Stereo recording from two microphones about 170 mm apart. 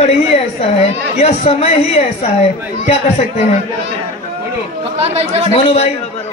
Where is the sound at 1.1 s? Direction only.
40° left (ahead or behind).